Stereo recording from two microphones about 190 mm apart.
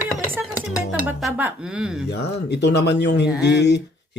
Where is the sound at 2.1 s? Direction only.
60° left (ahead or behind).